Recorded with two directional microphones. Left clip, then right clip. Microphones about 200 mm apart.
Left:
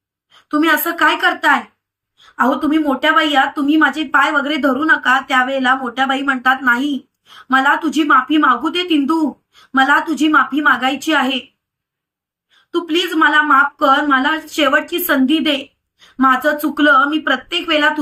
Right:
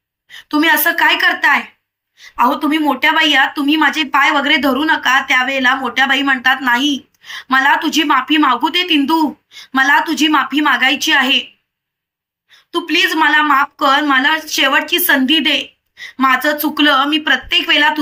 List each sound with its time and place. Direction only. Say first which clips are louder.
0.5 s a woman's voice: right 3 dB; 5° left (ahead or behind)
2.5 s a woman's voice: right 1 dB; 5° left (ahead or behind)
12.7 s a woman's voice: right 3 dB; 5° left (ahead or behind)